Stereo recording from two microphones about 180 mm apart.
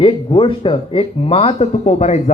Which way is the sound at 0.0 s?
30° left (ahead or behind).